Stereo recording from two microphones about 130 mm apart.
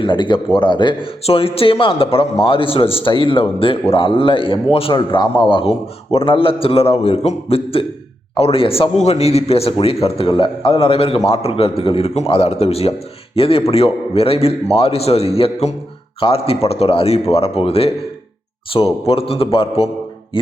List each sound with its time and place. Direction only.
0.0 s a man's voice: 40° left (ahead or behind)